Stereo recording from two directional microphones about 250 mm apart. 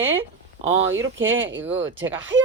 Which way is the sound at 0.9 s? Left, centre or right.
Right.